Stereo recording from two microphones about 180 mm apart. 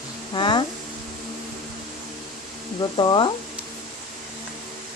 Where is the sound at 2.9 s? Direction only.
25° left (ahead or behind).